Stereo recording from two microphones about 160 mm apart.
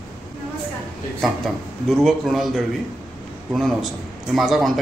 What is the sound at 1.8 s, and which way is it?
A man's voice, centre (ahead or behind).